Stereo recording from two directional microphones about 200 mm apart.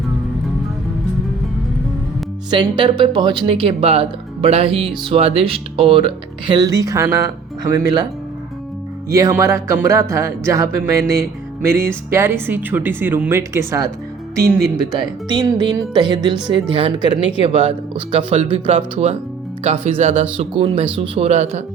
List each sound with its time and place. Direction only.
2.5 s speech: 25° right (ahead or behind)
9.0 s a woman's voice: 15° right (ahead or behind); by 21.6 s 30° right (ahead or behind)